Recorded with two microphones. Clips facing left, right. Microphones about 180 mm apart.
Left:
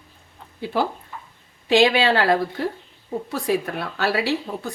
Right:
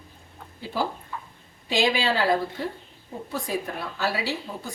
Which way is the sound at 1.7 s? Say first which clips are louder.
Left 7 dB; 70° left (ahead or behind).